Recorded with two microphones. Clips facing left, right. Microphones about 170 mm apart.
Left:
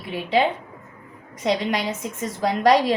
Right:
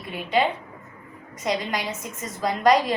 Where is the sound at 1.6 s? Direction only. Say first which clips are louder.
Left 4 dB; 90° left.